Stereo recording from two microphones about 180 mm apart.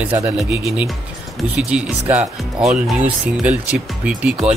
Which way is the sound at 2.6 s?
5° right (ahead or behind).